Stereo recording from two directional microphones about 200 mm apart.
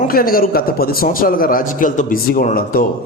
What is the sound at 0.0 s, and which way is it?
A man's voice, 45° left (ahead or behind).